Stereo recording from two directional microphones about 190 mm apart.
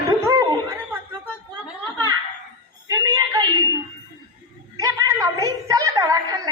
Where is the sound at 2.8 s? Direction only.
20° right (ahead or behind).